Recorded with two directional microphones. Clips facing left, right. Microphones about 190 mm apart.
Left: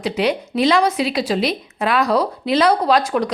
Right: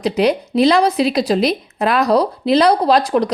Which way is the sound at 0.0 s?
40° right (ahead or behind).